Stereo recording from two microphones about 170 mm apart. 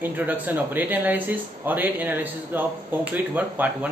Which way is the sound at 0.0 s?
10° right (ahead or behind).